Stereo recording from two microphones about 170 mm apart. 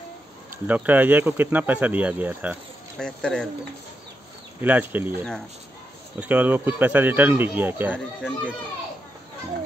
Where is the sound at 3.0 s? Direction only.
5° left (ahead or behind).